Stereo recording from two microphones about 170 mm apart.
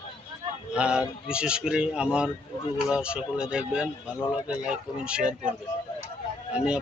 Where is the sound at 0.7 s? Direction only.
5° right (ahead or behind).